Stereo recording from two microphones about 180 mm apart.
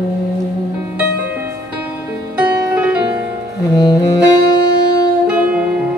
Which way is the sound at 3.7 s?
20° left (ahead or behind).